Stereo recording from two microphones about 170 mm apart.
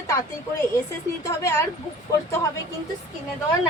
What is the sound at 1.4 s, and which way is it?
Speech, 15° left (ahead or behind).